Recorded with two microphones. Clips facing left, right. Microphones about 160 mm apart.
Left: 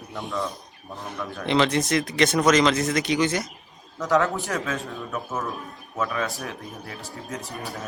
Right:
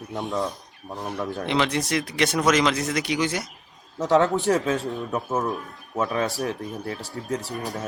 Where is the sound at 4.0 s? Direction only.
25° right (ahead or behind).